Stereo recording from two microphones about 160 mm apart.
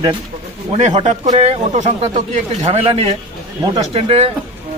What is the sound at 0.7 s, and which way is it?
Speech, 45° right (ahead or behind).